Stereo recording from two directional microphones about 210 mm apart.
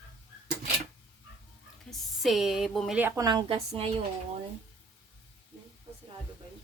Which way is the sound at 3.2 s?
20° right (ahead or behind).